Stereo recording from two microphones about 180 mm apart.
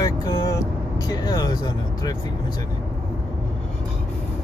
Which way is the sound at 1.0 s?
20° left (ahead or behind).